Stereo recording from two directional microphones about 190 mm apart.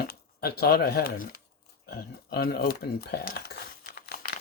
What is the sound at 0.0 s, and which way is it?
Speech, 55° left (ahead or behind).